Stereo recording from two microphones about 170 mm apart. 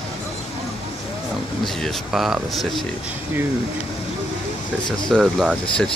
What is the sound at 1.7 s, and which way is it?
Speech, centre (ahead or behind).